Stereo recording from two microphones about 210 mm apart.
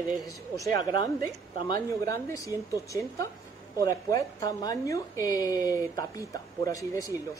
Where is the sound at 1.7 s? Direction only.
15° left (ahead or behind).